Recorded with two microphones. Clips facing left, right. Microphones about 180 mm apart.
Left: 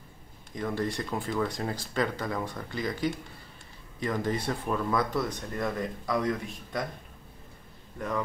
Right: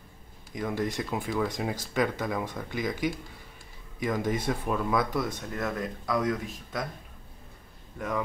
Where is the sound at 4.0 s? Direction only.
5° right (ahead or behind).